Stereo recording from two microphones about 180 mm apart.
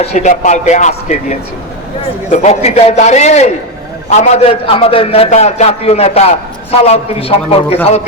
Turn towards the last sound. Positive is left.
turn(degrees=35)  # may be behind; listen again after turning